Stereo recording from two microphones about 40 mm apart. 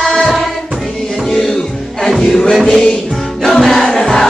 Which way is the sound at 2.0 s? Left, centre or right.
Centre.